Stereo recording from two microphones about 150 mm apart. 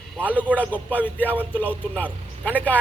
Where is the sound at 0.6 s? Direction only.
10° left (ahead or behind).